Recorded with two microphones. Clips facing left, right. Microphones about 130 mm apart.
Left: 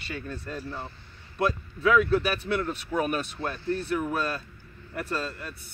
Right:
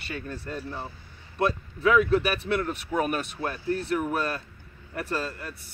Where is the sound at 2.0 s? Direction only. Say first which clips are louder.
Right 1 dB; 15° right (ahead or behind).